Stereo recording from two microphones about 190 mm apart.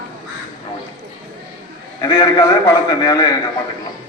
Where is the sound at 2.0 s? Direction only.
15° left (ahead or behind).